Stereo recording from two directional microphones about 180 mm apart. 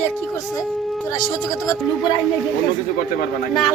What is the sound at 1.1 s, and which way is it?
Speech, 20° left (ahead or behind).